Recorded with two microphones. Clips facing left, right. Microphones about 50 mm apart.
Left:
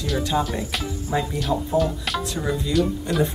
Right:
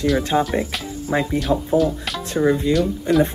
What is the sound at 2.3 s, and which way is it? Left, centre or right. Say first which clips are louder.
Speech: right 7 dB; right.